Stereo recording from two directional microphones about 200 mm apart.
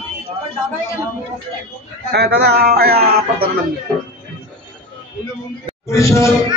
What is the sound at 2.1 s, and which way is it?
Speech, 50° right (ahead or behind).